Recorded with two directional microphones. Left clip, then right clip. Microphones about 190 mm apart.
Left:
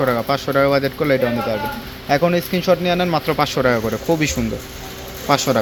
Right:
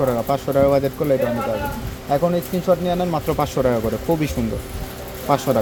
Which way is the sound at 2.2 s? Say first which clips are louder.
Left 2 dB; 15° left (ahead or behind).